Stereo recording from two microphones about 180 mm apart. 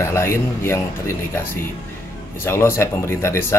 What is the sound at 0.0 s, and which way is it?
Speech, 15° left (ahead or behind).